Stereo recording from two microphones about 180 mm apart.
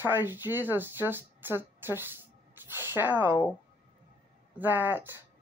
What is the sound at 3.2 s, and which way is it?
Speech, 25° left (ahead or behind).